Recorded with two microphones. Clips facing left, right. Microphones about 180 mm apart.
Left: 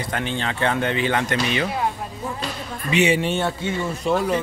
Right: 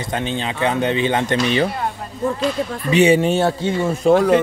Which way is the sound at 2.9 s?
35° right (ahead or behind).